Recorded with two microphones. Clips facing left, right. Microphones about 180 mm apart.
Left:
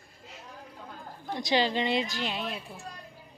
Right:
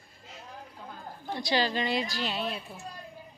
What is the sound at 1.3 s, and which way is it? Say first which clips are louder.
A woman's voice: left 2 dB; 20° left (ahead or behind).